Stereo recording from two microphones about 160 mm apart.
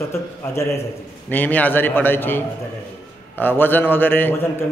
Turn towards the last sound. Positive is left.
turn(degrees=10)  # may be behind; listen again after turning